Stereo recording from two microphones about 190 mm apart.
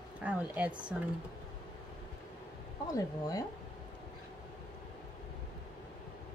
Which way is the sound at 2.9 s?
20° left (ahead or behind).